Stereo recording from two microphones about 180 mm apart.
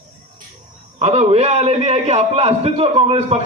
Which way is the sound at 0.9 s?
35° right (ahead or behind).